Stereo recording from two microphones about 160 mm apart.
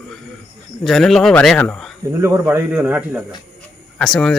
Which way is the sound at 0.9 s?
Centre (ahead or behind).